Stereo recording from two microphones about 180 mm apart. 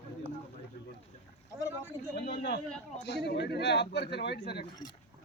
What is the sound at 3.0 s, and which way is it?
A man's voice, 70° left (ahead or behind).